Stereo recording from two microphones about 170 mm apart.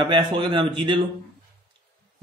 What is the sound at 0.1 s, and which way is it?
Speech, 25° right (ahead or behind).